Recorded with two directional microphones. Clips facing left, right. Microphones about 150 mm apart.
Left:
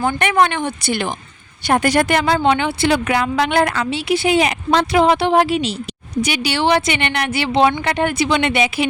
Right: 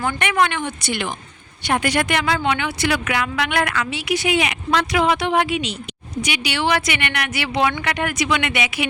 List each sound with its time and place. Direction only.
0.0 s a woman's voice: 35° left (ahead or behind)